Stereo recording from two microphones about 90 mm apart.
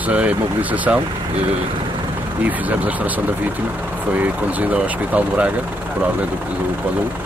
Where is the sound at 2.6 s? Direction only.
15° right (ahead or behind).